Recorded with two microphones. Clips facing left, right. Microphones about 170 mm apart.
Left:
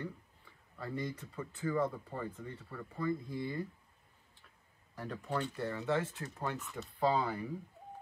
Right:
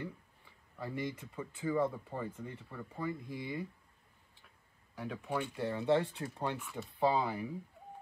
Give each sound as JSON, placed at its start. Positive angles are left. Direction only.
{"t": 0.7, "sound": "speech", "side_deg": -15}
{"t": 4.9, "sound": "speech", "side_deg": -5}
{"t": 5.4, "sound": "speech", "side_deg": -15}